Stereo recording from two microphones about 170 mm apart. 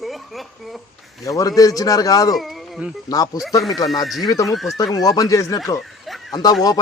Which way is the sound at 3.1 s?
20° left (ahead or behind).